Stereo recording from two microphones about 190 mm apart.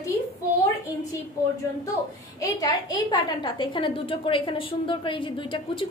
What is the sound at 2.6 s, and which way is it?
A woman's voice, 20° left (ahead or behind).